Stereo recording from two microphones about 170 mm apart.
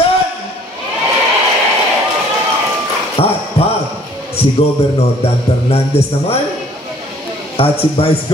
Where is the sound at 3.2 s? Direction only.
35° left (ahead or behind).